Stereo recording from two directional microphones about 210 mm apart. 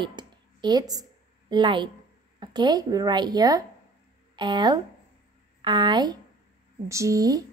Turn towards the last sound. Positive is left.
turn(degrees=-15)  # may be behind; listen again after turning